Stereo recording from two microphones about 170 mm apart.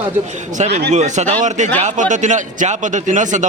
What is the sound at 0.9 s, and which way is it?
A man's voice, 45° right (ahead or behind).